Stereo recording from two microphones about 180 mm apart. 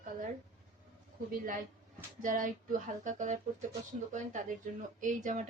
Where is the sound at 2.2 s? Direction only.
45° right (ahead or behind).